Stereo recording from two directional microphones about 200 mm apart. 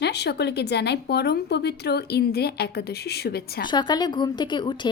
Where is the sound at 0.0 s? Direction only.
55° left (ahead or behind).